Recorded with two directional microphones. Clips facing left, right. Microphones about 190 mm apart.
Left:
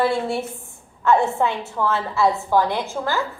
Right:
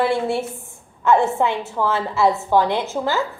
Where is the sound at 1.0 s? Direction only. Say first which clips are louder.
Right 1 dB; 20° right (ahead or behind).